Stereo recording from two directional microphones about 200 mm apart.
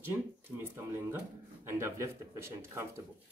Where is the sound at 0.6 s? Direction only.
10° right (ahead or behind).